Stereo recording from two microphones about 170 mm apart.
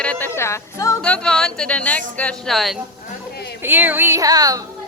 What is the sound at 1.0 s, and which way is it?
A woman's voice, 5° left (ahead or behind).